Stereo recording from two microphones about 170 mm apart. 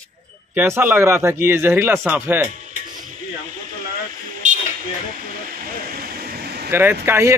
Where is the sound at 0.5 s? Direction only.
15° right (ahead or behind).